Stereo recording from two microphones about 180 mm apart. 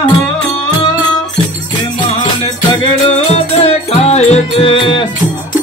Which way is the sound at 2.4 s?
30° left (ahead or behind).